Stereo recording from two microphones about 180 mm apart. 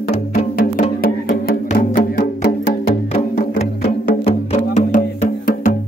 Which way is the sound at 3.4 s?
35° left (ahead or behind).